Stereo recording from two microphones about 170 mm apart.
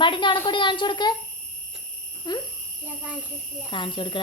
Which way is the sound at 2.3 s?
25° left (ahead or behind).